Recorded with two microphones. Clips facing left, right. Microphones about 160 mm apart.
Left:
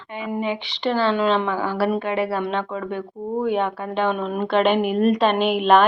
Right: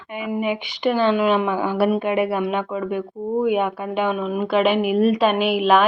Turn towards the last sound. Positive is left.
turn(degrees=-5)  # may be behind; listen again after turning